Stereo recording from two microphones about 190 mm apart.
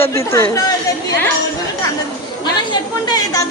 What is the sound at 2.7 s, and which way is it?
Chatter, 20° left (ahead or behind).